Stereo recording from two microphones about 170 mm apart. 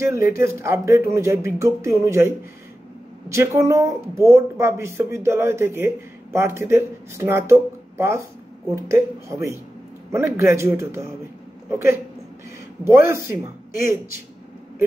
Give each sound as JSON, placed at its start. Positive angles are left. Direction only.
{"t": 0.0, "sound": "speech", "side_deg": -15}